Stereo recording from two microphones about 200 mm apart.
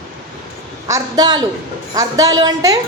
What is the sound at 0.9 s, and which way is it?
A woman's voice, 20° right (ahead or behind).